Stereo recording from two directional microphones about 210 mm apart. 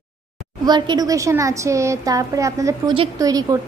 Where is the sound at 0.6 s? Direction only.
20° right (ahead or behind).